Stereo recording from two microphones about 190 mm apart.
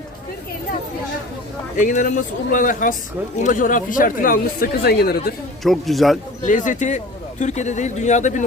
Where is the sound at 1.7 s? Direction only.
45° left (ahead or behind).